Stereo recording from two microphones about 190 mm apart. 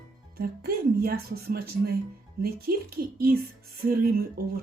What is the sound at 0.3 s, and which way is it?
Speech, 55° right (ahead or behind).